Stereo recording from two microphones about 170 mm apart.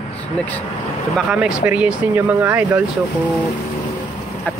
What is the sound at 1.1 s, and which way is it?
Speech, 5° right (ahead or behind).